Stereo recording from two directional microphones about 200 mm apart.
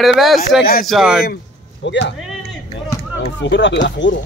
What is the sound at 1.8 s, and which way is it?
Speech, 60° left (ahead or behind).